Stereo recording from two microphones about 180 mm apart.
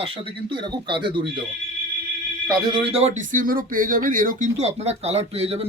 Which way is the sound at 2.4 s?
20° right (ahead or behind).